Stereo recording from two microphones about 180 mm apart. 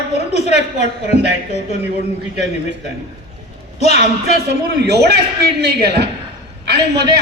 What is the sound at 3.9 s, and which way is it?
Speech, 40° left (ahead or behind).